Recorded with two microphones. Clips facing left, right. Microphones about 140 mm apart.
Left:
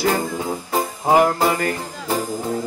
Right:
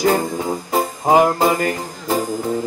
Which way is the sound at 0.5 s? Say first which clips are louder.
Right 3 dB; 15° right (ahead or behind).